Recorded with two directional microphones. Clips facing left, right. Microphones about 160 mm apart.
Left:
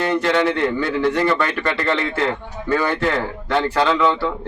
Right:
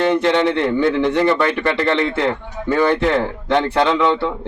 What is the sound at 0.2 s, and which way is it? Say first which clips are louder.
A man's voice: right 2 dB; 20° right (ahead or behind).